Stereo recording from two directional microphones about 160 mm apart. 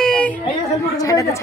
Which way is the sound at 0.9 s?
20° left (ahead or behind).